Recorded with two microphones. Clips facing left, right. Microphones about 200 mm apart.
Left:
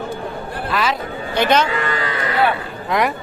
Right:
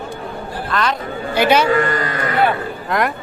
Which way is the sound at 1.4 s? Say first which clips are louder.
Right 2 dB; 10° right (ahead or behind).